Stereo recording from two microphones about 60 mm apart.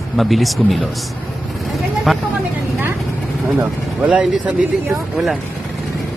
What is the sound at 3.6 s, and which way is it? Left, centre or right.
Speech, right.